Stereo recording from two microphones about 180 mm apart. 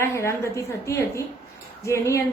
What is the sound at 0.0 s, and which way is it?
A woman's voice, 15° left (ahead or behind).